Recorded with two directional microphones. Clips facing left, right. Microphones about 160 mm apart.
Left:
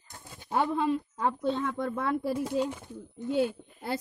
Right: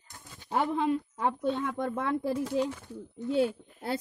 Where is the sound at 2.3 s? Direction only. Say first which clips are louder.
Even; 15° left (ahead or behind).